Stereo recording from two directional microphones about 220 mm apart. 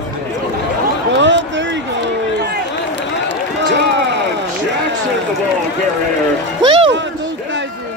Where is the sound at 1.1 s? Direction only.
55° right (ahead or behind).